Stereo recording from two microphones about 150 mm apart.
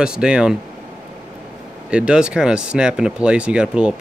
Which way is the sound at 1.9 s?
5° right (ahead or behind).